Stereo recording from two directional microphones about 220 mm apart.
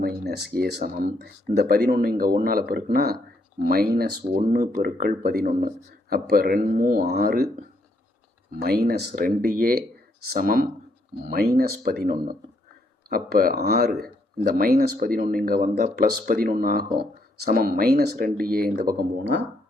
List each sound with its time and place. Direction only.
0.0 s speech: 45° right (ahead or behind)
4.4 s speech: 35° right (ahead or behind)
8.6 s speech: 45° right (ahead or behind)